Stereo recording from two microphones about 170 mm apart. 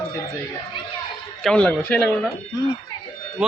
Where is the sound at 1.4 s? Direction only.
5° left (ahead or behind).